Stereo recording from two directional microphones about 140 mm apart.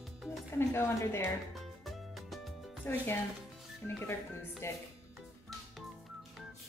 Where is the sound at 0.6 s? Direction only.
15° left (ahead or behind).